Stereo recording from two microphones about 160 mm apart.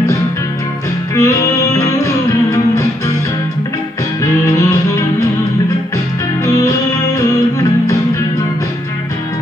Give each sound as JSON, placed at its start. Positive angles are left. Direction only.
{"t": 1.1, "sound": "music", "side_deg": 20}
{"t": 4.2, "sound": "music", "side_deg": 20}
{"t": 6.4, "sound": "music", "side_deg": 20}